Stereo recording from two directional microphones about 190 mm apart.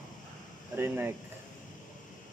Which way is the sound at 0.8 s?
10° right (ahead or behind).